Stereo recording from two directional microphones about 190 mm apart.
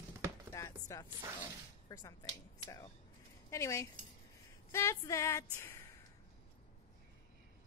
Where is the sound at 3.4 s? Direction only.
15° left (ahead or behind).